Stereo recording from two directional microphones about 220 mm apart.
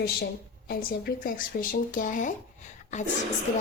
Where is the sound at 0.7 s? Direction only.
40° left (ahead or behind).